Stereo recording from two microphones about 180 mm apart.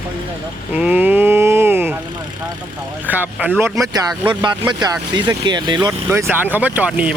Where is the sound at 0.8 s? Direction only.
10° right (ahead or behind).